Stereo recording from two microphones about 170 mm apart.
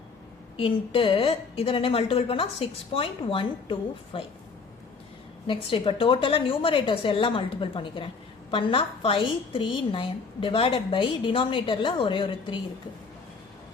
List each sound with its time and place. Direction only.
0.5 s a woman's voice: 30° left (ahead or behind)
5.5 s a woman's voice: 30° left (ahead or behind)